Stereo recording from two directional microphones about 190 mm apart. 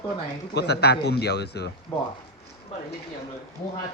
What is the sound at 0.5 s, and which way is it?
A man's voice, 60° left (ahead or behind).